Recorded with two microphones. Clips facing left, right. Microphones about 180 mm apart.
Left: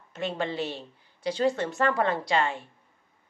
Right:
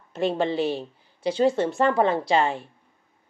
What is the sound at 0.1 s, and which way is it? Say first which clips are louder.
Speech: right 7 dB; 35° right (ahead or behind).